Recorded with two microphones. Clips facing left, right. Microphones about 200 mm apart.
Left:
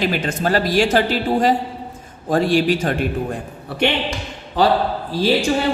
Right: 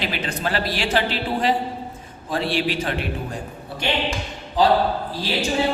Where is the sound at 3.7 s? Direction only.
70° left (ahead or behind).